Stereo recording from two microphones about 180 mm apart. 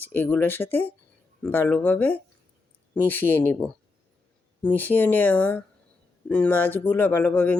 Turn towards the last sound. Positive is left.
turn(degrees=10)  # may be behind; listen again after turning